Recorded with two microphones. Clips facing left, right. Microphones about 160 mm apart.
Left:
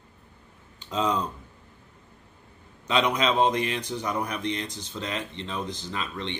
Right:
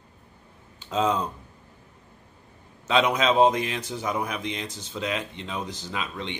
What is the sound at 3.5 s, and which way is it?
Speech, 10° right (ahead or behind).